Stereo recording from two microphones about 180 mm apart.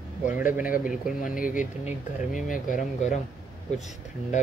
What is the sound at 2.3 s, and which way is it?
Speech, 45° left (ahead or behind).